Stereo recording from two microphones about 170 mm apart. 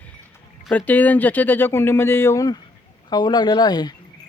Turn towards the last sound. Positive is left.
turn(degrees=25)  # may be behind; listen again after turning